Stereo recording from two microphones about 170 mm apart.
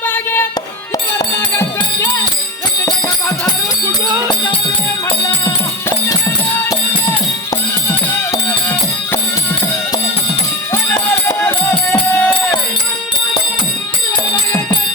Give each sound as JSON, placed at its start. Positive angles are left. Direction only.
{"t": 0.1, "sound": "music", "side_deg": 15}
{"t": 2.8, "sound": "jingle bell", "side_deg": 20}
{"t": 10.7, "sound": "music", "side_deg": 20}